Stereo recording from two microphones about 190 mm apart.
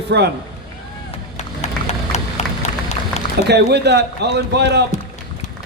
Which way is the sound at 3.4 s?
60° right (ahead or behind).